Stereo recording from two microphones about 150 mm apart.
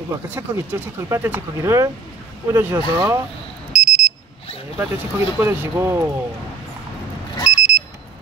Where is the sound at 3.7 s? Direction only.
5° right (ahead or behind).